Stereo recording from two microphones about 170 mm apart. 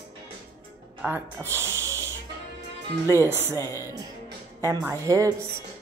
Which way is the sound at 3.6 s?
15° left (ahead or behind).